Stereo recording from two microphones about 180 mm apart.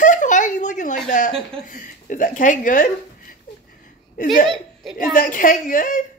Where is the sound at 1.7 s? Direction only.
45° left (ahead or behind).